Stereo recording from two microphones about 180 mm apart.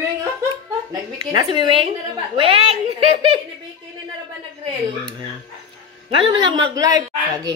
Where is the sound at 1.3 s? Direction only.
25° right (ahead or behind).